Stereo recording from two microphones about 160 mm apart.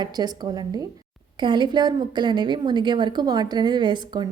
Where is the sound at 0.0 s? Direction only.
25° right (ahead or behind).